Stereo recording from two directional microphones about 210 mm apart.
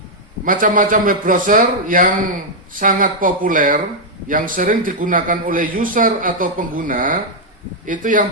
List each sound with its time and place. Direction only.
0.4 s a man's voice: 40° right (ahead or behind)